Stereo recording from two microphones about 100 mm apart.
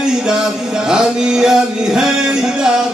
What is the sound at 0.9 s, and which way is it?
Music, 5° right (ahead or behind).